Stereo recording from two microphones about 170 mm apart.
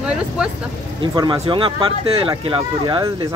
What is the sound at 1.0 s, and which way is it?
Speech, 25° right (ahead or behind).